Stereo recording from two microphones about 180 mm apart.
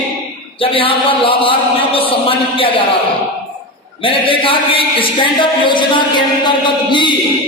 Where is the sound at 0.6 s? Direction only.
30° left (ahead or behind).